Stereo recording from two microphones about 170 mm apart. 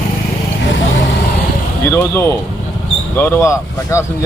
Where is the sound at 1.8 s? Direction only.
15° left (ahead or behind).